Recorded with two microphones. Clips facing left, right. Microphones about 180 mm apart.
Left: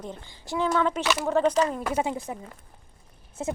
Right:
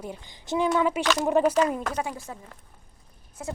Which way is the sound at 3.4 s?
25° left (ahead or behind).